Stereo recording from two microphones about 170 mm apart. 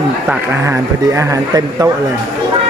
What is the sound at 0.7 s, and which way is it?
Speech, 20° right (ahead or behind).